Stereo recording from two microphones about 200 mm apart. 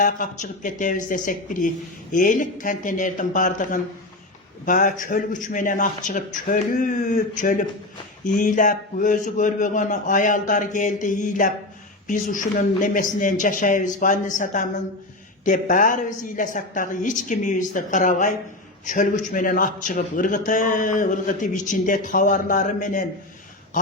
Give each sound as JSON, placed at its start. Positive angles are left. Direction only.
{"t": 0.0, "sound": "a man's voice", "side_deg": 45}